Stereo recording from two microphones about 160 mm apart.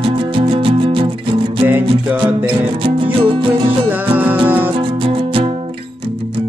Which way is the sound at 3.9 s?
10° right (ahead or behind).